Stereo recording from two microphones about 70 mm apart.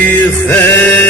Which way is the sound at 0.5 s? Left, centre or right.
Left.